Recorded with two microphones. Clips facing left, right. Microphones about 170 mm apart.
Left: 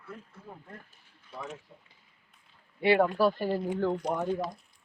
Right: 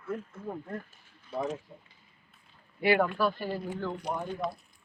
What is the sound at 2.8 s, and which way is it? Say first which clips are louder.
Speech: left 2 dB; 25° left (ahead or behind).